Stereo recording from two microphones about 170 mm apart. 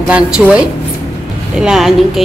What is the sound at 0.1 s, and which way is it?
A woman's voice, 5° right (ahead or behind).